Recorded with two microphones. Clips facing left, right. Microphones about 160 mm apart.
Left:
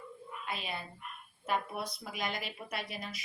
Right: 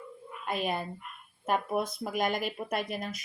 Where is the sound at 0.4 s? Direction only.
50° right (ahead or behind).